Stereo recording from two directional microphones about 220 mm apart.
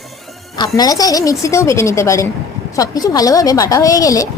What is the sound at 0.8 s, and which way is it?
A woman's voice, 15° left (ahead or behind).